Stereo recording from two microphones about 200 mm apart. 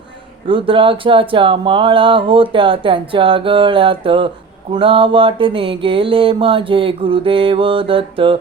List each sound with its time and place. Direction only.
0.4 s speech: 25° right (ahead or behind)